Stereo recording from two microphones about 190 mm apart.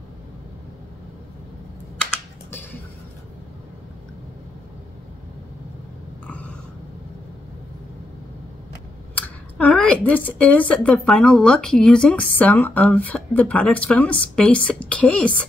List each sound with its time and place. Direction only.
9.1 s speech: 5° left (ahead or behind)